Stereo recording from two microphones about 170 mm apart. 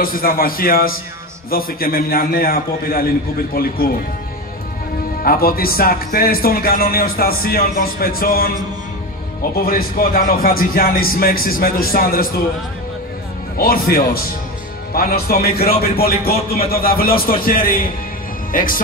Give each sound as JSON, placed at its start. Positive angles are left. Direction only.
{"t": 0.0, "sound": "speech", "side_deg": 60}
{"t": 5.2, "sound": "speech", "side_deg": 60}
{"t": 9.7, "sound": "speech", "side_deg": 55}
{"t": 13.6, "sound": "a man's voice", "side_deg": 60}